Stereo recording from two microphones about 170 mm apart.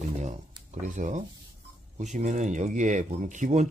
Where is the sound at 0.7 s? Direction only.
45° right (ahead or behind).